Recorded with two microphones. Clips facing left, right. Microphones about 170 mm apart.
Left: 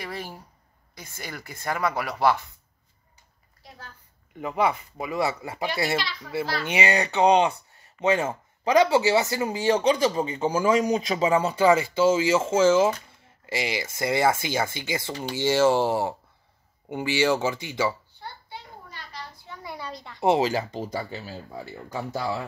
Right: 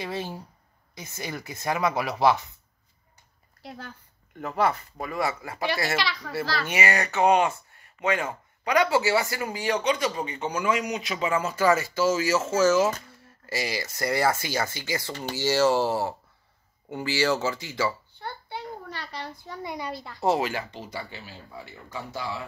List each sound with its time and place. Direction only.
0.0 s speech: 20° right (ahead or behind)
3.6 s a woman's voice: 70° right (ahead or behind)
4.4 s speech: centre (ahead or behind)
5.2 s speech: 25° left (ahead or behind)
5.9 s a child's voice: 80° right
6.6 s speech: 20° left (ahead or behind)
18.2 s a sound: 65° right (ahead or behind)
19.6 s speech: 20° right (ahead or behind)
19.9 s speech: 5° right (ahead or behind)
20.2 s speech: 25° left (ahead or behind)